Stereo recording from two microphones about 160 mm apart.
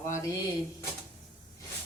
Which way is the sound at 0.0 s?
15° left (ahead or behind).